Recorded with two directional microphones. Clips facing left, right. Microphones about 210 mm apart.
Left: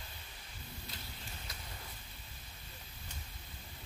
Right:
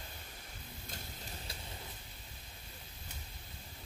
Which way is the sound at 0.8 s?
45° right (ahead or behind).